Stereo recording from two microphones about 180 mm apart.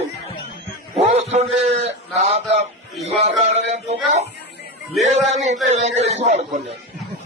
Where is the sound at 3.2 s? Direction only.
40° right (ahead or behind).